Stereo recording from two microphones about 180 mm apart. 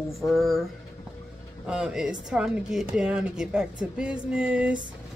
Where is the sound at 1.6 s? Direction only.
5° right (ahead or behind).